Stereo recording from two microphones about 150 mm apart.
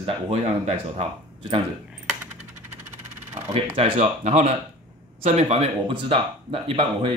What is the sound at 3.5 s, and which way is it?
Speech, 40° right (ahead or behind).